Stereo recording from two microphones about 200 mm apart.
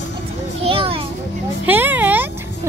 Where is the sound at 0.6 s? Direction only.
25° right (ahead or behind).